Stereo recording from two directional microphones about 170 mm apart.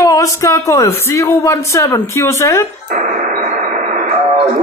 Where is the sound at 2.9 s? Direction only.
45° right (ahead or behind).